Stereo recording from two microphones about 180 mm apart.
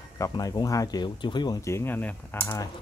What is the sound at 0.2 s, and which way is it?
Speech, 20° left (ahead or behind).